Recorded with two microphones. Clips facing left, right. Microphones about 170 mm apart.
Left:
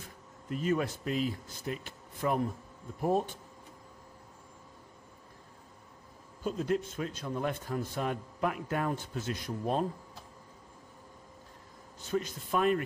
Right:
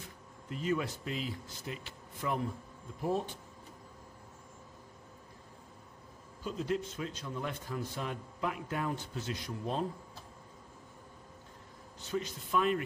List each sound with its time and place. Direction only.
0.5 s a man's voice: 50° left (ahead or behind)
6.4 s a man's voice: 50° left (ahead or behind)
12.1 s a man's voice: 50° left (ahead or behind)